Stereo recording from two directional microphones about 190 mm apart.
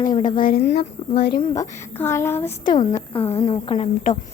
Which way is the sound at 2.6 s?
25° left (ahead or behind).